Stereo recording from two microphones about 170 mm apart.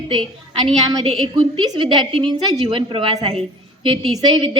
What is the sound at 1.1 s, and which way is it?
A woman's voice, 35° right (ahead or behind).